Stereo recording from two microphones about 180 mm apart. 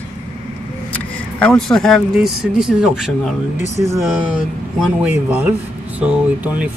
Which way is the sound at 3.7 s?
15° right (ahead or behind).